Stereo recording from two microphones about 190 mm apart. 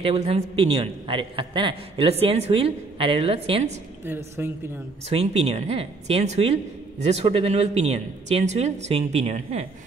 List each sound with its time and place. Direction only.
0.0 s a man's voice: 30° right (ahead or behind)
4.0 s speech: 10° right (ahead or behind)
5.1 s a woman's voice: 35° right (ahead or behind)